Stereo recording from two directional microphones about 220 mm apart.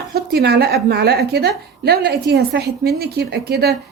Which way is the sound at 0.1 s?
45° right (ahead or behind).